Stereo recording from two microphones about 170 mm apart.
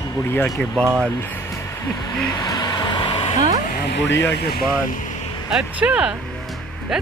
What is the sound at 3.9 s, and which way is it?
Speech, 90° left.